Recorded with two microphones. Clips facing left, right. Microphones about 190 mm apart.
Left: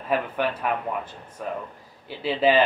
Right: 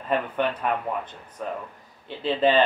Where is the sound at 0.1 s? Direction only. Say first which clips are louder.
Even; 5° left (ahead or behind).